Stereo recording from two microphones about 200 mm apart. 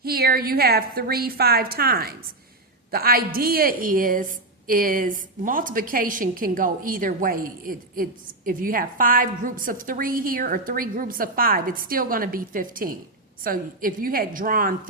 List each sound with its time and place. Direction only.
0.0 s a woman's voice: 50° right (ahead or behind)